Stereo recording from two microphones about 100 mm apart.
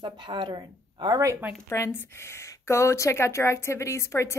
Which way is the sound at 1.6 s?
30° left (ahead or behind).